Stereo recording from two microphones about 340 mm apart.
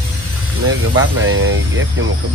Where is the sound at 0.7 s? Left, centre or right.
Right.